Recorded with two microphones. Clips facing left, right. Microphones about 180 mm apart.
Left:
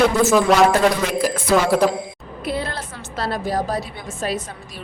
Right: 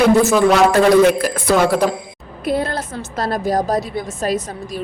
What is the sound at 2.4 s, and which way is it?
A woman's voice, 45° right (ahead or behind).